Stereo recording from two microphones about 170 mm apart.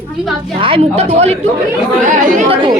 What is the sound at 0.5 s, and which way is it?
Speech, 35° right (ahead or behind).